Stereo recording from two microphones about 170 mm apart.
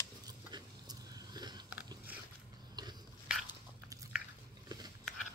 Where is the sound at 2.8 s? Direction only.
25° right (ahead or behind).